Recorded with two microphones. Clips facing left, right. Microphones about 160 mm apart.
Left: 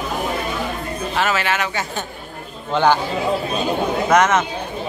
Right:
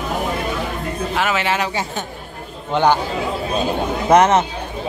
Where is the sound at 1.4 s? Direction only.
30° right (ahead or behind).